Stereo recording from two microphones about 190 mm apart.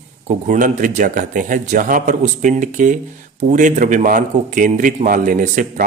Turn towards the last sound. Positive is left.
turn(degrees=-40)  # may be behind; listen again after turning